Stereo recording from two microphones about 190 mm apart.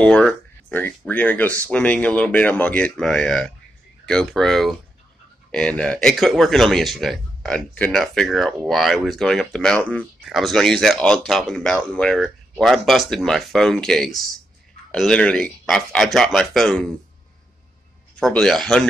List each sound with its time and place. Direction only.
0.0 s speech: 5° left (ahead or behind)
18.2 s speech: 5° left (ahead or behind)